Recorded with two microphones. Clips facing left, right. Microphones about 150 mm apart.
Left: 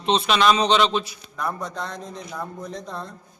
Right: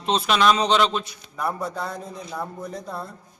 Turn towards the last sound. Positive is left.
turn(degrees=-5)  # may be behind; listen again after turning